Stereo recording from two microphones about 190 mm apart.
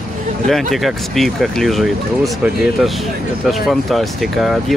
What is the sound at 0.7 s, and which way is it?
Speech, centre (ahead or behind).